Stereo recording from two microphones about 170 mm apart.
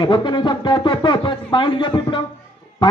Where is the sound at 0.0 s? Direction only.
25° left (ahead or behind).